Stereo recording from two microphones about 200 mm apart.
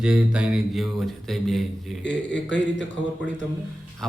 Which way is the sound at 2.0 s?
60° left (ahead or behind).